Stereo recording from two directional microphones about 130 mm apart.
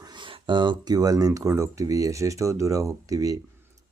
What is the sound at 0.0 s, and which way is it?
Speech, 35° right (ahead or behind).